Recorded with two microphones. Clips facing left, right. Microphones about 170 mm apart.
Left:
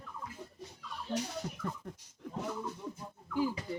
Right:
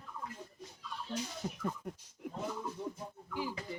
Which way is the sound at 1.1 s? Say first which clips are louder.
Left 4 dB; 55° left (ahead or behind).